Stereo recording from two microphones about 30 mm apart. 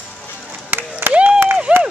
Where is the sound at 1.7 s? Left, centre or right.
Right.